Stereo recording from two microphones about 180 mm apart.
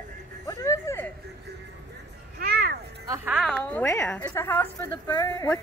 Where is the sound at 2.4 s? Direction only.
60° right (ahead or behind).